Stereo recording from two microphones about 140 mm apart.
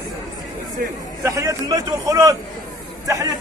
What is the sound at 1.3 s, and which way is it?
A man's voice, 20° right (ahead or behind).